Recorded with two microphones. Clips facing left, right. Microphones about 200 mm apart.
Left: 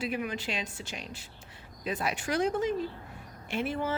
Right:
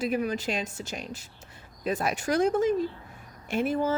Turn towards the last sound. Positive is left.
turn(degrees=-40)  # may be behind; listen again after turning